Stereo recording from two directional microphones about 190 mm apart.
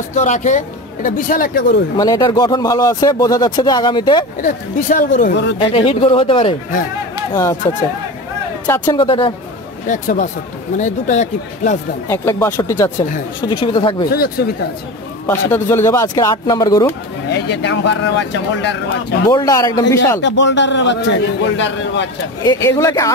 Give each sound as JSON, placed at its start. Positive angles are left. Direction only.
{"t": 0.1, "sound": "speech", "side_deg": 40}
{"t": 2.0, "sound": "speech", "side_deg": 20}
{"t": 4.4, "sound": "speech", "side_deg": 45}
{"t": 5.7, "sound": "speech", "side_deg": 30}
{"t": 8.6, "sound": "speech", "side_deg": 15}
{"t": 9.8, "sound": "speech", "side_deg": 40}
{"t": 12.1, "sound": "speech", "side_deg": 15}
{"t": 13.5, "sound": "speech", "side_deg": 25}
{"t": 14.1, "sound": "speech", "side_deg": 55}
{"t": 15.2, "sound": "speech", "side_deg": 10}
{"t": 17.3, "sound": "speech", "side_deg": 65}
{"t": 19.2, "sound": "speech", "side_deg": 15}
{"t": 20.2, "sound": "a man's voice", "side_deg": 70}
{"t": 22.7, "sound": "speech", "side_deg": 15}